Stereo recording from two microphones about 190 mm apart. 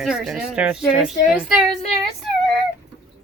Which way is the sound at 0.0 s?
Centre (ahead or behind).